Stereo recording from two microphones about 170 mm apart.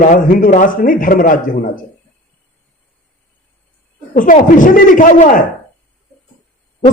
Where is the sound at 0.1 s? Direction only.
55° left (ahead or behind).